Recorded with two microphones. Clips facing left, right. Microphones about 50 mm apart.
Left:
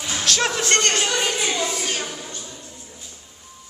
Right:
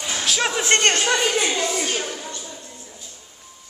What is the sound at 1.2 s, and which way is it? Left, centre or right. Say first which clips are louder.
Speech: right 2 dB; centre.